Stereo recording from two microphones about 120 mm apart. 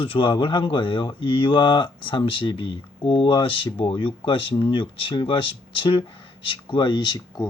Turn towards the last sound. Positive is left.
turn(degrees=35)  # may be behind; listen again after turning